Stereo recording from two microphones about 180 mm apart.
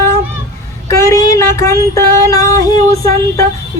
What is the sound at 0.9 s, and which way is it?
Female singing, 15° left (ahead or behind).